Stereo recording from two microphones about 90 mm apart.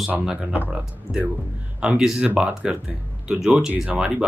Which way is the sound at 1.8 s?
10° right (ahead or behind).